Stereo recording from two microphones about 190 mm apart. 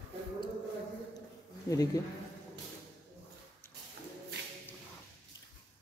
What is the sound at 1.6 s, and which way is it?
Speech, 20° left (ahead or behind).